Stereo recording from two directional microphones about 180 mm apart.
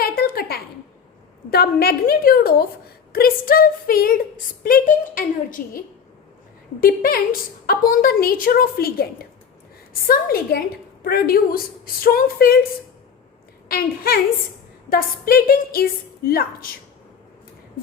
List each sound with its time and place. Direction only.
0.2 s a sound: 60° left (ahead or behind)
1.5 s a woman's voice: 60° left (ahead or behind)
10.1 s a woman's voice: 55° left (ahead or behind)
13.7 s a woman's voice: 60° left (ahead or behind)